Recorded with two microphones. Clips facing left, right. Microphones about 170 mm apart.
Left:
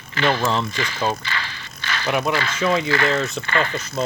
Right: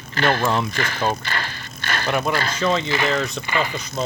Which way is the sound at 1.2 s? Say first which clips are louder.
Right 2 dB; 50° right (ahead or behind).